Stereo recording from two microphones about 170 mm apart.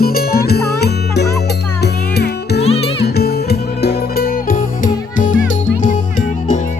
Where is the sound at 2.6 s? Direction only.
35° left (ahead or behind).